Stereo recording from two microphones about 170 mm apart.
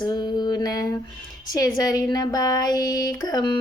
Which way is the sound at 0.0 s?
20° left (ahead or behind).